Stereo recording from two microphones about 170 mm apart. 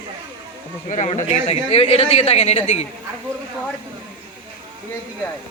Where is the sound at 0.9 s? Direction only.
45° left (ahead or behind).